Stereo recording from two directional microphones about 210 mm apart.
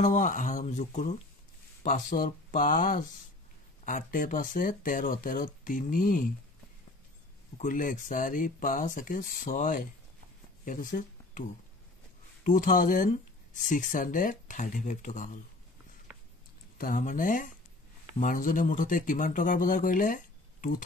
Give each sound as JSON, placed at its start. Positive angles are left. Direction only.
{"t": 0.0, "sound": "speech", "side_deg": 35}
{"t": 7.5, "sound": "speech", "side_deg": 40}
{"t": 12.4, "sound": "speech", "side_deg": 40}
{"t": 16.7, "sound": "speech", "side_deg": 40}